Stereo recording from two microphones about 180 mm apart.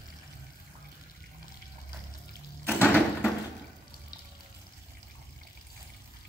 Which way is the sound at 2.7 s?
10° left (ahead or behind).